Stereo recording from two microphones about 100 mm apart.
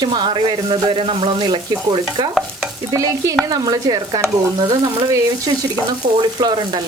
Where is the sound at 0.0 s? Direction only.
50° right (ahead or behind).